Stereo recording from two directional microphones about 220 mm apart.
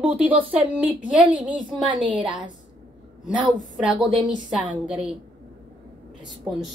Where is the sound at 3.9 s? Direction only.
20° right (ahead or behind).